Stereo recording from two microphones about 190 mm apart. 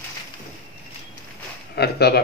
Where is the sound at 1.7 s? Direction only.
60° left (ahead or behind).